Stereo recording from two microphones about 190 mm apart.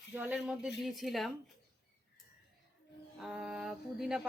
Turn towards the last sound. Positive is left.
turn(degrees=-5)  # may be behind; listen again after turning